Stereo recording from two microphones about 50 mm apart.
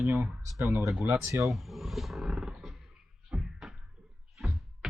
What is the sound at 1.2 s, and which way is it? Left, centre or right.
Speech, right.